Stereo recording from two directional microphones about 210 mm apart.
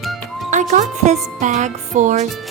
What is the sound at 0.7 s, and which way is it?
A woman's voice, 35° right (ahead or behind).